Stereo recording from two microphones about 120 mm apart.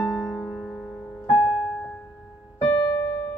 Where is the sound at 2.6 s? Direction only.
40° left (ahead or behind).